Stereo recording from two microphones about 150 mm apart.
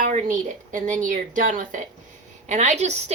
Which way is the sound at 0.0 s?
55° right (ahead or behind).